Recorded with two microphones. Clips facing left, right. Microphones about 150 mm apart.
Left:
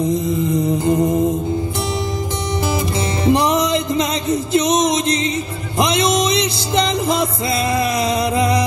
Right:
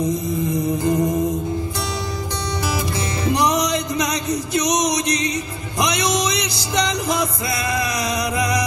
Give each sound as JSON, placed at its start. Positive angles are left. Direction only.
{"t": 0.8, "sound": "music", "side_deg": 20}
{"t": 3.3, "sound": "music", "side_deg": 25}